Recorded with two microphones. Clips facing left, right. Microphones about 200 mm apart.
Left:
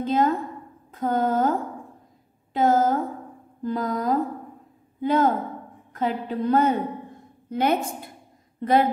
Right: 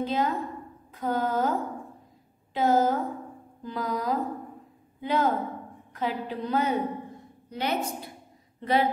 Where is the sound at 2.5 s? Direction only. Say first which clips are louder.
Left 3 dB; 50° left (ahead or behind).